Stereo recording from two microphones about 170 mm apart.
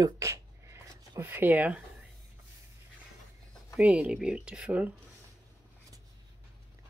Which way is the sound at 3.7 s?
5° right (ahead or behind).